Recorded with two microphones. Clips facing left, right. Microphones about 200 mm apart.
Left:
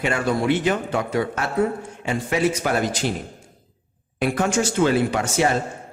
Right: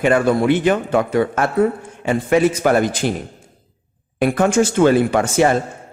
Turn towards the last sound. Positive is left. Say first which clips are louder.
# right 5 dB
turn(degrees=-55)  # may be behind; listen again after turning